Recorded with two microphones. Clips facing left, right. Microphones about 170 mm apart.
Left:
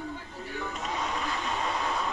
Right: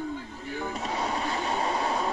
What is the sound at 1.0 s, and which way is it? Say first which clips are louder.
Vehicle: right 4 dB; 35° right (ahead or behind).